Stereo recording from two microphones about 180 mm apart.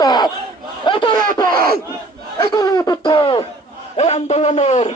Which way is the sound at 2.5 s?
20° left (ahead or behind).